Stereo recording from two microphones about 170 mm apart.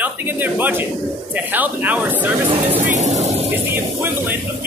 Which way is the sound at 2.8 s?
40° right (ahead or behind).